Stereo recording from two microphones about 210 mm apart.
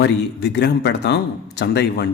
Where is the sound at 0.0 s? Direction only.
55° left (ahead or behind).